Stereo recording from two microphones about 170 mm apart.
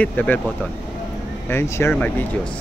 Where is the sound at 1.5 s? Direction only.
15° left (ahead or behind).